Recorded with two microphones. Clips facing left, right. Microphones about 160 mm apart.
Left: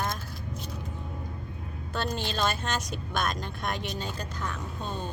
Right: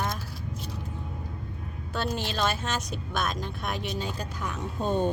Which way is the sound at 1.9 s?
5° right (ahead or behind).